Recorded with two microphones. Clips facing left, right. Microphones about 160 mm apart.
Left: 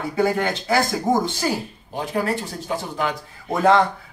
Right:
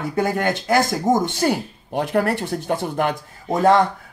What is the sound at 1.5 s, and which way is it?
Speech, 65° right (ahead or behind).